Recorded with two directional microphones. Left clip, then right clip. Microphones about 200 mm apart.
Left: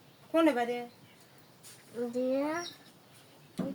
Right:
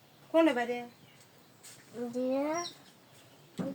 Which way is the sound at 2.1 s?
25° left (ahead or behind).